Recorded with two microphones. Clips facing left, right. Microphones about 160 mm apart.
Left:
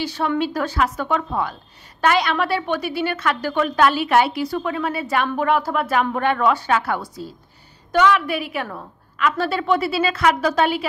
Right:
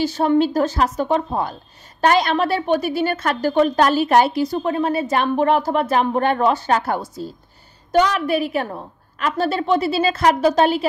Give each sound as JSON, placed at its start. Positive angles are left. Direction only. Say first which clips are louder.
{"t": 0.0, "sound": "a woman's voice", "louder": "right 5 dB", "side_deg": -45}
{"t": 8.6, "sound": "a woman's voice", "louder": "right 3 dB", "side_deg": -30}
{"t": 9.5, "sound": "a woman's voice", "louder": "right 2 dB", "side_deg": -40}